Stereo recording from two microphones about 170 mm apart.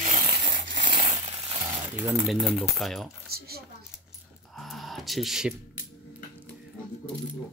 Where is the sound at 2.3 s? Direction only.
5° right (ahead or behind).